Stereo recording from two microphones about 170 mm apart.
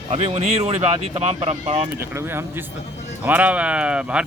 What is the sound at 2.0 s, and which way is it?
Speech, 15° right (ahead or behind).